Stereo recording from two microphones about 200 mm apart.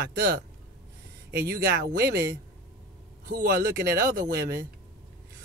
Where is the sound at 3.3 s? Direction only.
45° right (ahead or behind).